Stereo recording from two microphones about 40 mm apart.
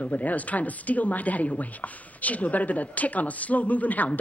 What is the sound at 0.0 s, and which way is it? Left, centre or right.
Speech, left.